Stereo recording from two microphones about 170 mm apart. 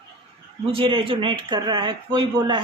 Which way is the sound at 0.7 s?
30° right (ahead or behind).